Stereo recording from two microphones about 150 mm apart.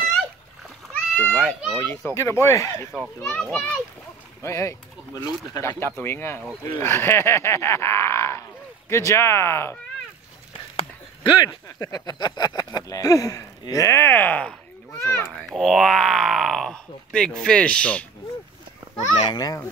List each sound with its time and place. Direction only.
1.1 s speech: 10° left (ahead or behind)
1.9 s speech: 15° left (ahead or behind)
2.9 s speech: 5° left (ahead or behind)
4.4 s speech: 20° left (ahead or behind)
10.8 s speech: 30° left (ahead or behind); by 15.2 s 15° left (ahead or behind)
15.5 s speech: centre (ahead or behind)
19.3 s speech: 25° left (ahead or behind)